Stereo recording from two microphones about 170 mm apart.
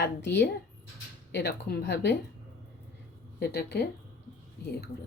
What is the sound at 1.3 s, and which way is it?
Speech, 75° left (ahead or behind).